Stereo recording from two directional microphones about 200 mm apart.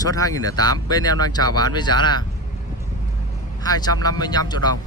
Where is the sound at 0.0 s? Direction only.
15° left (ahead or behind).